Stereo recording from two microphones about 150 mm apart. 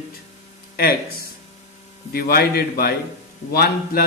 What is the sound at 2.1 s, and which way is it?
A man's voice, 90° left.